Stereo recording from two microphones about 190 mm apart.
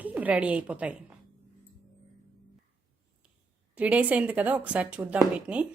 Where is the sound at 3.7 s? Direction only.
5° right (ahead or behind).